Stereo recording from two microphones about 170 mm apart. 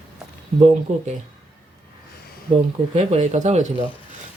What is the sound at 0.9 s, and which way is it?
Speech, 45° right (ahead or behind).